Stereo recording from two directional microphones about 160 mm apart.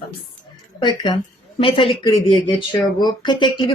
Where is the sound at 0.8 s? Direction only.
30° left (ahead or behind).